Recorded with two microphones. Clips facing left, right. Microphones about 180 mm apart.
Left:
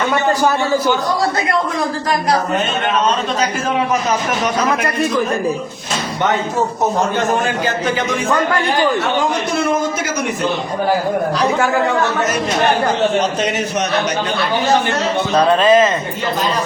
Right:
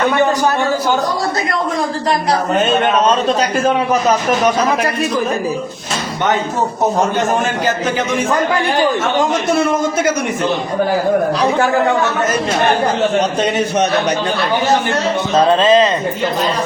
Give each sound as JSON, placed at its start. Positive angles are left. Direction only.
{"t": 13.4, "sound": "a man's voice", "side_deg": -30}
{"t": 15.4, "sound": "speech", "side_deg": -20}